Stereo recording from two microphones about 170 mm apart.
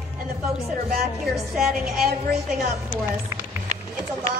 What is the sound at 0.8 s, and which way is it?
Speech, centre (ahead or behind).